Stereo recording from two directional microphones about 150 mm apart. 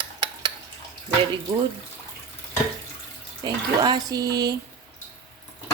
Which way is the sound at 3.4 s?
30° right (ahead or behind).